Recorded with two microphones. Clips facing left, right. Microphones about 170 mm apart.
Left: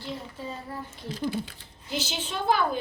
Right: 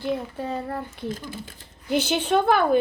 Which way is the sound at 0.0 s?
60° right (ahead or behind).